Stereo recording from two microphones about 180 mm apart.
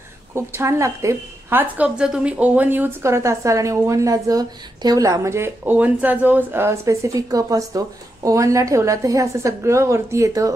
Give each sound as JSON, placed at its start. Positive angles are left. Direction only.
{"t": 0.3, "sound": "a woman's voice", "side_deg": -15}